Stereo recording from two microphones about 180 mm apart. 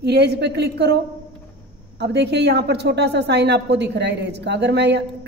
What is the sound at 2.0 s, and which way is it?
A woman's voice, 70° right (ahead or behind).